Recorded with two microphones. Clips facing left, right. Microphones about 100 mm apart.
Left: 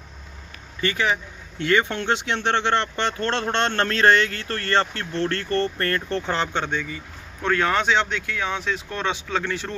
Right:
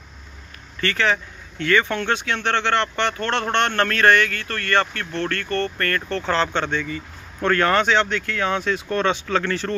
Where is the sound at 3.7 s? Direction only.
25° left (ahead or behind).